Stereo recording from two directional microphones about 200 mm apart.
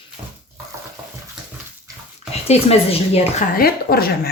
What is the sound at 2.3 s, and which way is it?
A woman's voice, 30° left (ahead or behind).